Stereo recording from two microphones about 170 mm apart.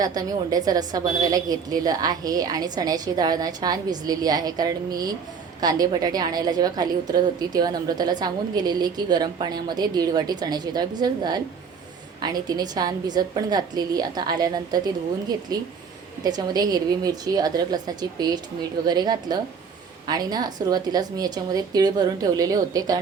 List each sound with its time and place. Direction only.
0.0 s a woman's voice: 20° right (ahead or behind)